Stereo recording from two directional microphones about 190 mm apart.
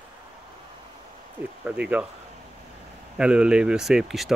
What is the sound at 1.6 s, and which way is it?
Speech, 5° right (ahead or behind).